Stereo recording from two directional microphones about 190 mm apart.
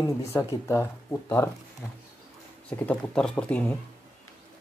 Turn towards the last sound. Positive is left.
turn(degrees=5)  # may be behind; listen again after turning